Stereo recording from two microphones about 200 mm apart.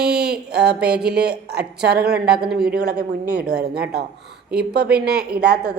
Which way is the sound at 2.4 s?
5° right (ahead or behind).